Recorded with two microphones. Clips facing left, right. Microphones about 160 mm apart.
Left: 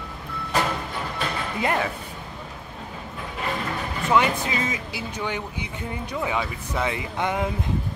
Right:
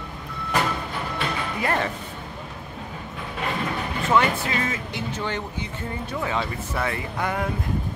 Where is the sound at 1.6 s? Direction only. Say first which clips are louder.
Left 1 dB; 15° left (ahead or behind).